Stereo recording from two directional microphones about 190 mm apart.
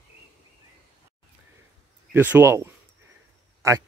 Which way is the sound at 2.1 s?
10° right (ahead or behind).